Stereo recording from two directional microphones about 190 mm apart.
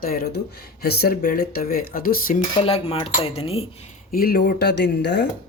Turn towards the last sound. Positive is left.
turn(degrees=65)  # may be behind; listen again after turning